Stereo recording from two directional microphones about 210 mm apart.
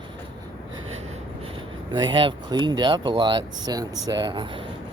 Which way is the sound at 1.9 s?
20° right (ahead or behind).